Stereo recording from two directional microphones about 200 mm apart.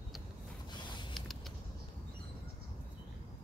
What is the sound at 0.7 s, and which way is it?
Creak, 25° left (ahead or behind).